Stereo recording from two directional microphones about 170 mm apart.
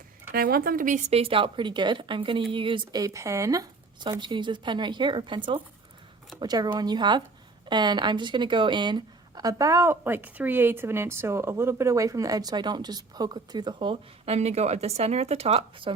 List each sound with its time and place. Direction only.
0.3 s speech: 60° right (ahead or behind)
1.1 s speech: 35° right (ahead or behind)
6.4 s speech: 25° right (ahead or behind)